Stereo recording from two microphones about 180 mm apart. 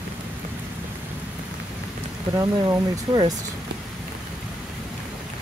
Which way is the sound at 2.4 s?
20° right (ahead or behind).